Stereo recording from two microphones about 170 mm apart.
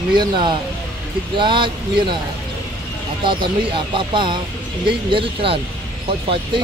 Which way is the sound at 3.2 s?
30° right (ahead or behind).